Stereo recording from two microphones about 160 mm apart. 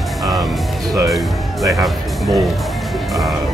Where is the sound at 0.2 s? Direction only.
Centre (ahead or behind).